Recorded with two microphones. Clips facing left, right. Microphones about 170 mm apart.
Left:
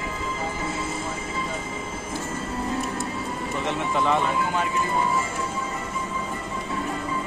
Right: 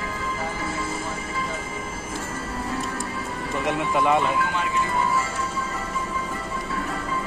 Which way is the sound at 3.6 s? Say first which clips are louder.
Right 3 dB; 15° right (ahead or behind).